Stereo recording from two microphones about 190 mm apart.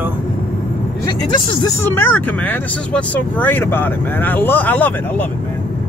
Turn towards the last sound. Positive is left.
turn(degrees=10)  # may be behind; listen again after turning